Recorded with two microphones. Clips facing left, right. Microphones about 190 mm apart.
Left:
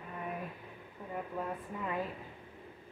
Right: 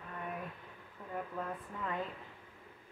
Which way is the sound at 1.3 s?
15° left (ahead or behind).